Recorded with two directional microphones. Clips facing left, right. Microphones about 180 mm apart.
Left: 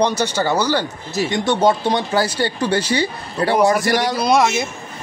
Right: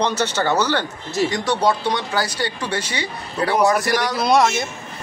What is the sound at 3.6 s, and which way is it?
Speech, centre (ahead or behind).